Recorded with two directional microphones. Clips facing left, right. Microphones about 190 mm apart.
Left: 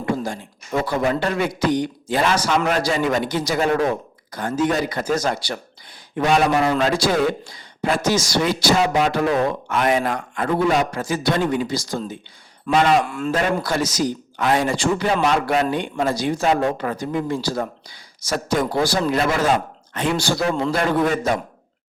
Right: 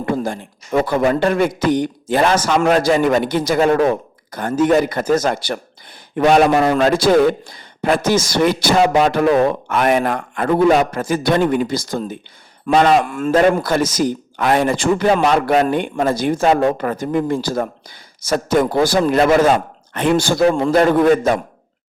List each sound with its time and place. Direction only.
0.0 s a man's voice: 55° right (ahead or behind)